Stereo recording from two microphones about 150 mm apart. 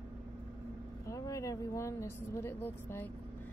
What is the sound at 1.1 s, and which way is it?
A woman's voice, 20° left (ahead or behind).